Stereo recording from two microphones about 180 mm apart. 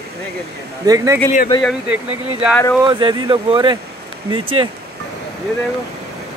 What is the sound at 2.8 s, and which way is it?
Speech, 25° right (ahead or behind).